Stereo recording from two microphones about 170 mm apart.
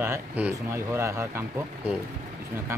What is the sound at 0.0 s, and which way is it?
Speech, 15° right (ahead or behind).